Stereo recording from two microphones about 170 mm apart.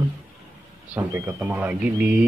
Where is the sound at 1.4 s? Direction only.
10° right (ahead or behind).